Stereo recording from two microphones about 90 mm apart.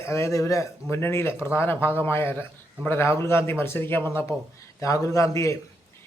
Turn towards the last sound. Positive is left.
turn(degrees=35)  # may be behind; listen again after turning